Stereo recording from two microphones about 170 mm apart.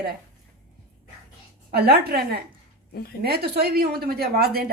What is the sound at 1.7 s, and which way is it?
A woman's voice, 65° right (ahead or behind).